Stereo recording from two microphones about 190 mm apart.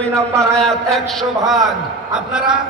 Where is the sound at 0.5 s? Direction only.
Centre (ahead or behind).